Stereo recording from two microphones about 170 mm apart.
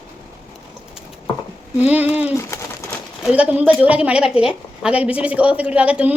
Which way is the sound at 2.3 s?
15° left (ahead or behind).